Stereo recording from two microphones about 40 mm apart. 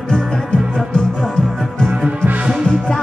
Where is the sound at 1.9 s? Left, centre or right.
Right.